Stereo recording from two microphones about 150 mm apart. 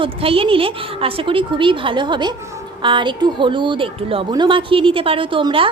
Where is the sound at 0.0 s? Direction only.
40° right (ahead or behind).